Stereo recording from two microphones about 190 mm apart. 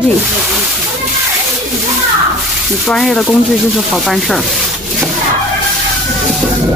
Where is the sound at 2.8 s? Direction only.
Centre (ahead or behind).